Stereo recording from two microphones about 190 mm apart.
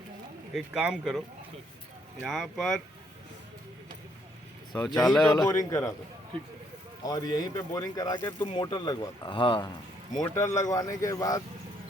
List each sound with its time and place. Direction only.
0.5 s speech: 5° right (ahead or behind)
2.2 s speech: centre (ahead or behind)
4.7 s speech: centre (ahead or behind)
5.3 s a man's voice: 20° left (ahead or behind)
7.0 s speech: 20° left (ahead or behind)